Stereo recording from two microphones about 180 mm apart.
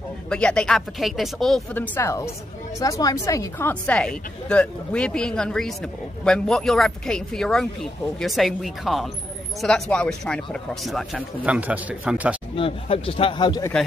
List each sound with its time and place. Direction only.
0.3 s a woman's voice: 5° left (ahead or behind)
12.5 s speech: 30° left (ahead or behind)